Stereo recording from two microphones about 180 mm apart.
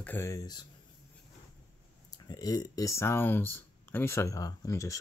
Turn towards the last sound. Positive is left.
turn(degrees=15)  # may be behind; listen again after turning